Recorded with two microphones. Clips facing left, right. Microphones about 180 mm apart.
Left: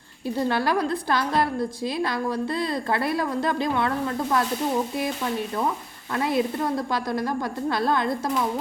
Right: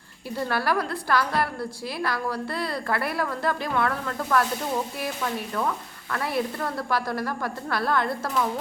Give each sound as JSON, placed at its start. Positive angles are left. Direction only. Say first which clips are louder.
{"t": 0.3, "sound": "a woman's voice", "louder": "left 2 dB", "side_deg": 20}
{"t": 6.1, "sound": "a woman's voice", "louder": "left 4 dB", "side_deg": 20}